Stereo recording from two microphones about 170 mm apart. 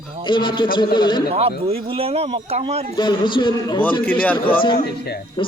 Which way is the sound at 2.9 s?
25° left (ahead or behind).